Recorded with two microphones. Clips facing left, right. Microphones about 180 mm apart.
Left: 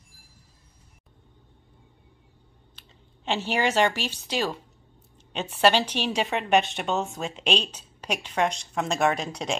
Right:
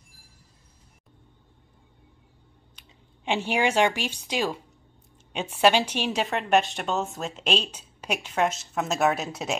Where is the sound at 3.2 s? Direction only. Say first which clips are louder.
Right 1 dB; 10° right (ahead or behind).